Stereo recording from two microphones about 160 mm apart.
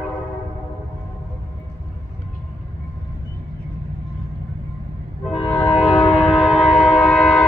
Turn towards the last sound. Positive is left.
turn(degrees=10)  # may be behind; listen again after turning